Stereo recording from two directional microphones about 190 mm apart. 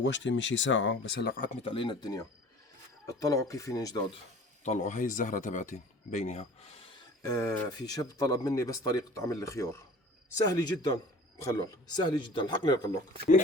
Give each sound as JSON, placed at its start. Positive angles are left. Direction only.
{"t": 0.0, "sound": "speech", "side_deg": 70}
{"t": 1.6, "sound": "speech", "side_deg": 25}
{"t": 4.6, "sound": "speech", "side_deg": 40}
{"t": 7.3, "sound": "speech", "side_deg": 15}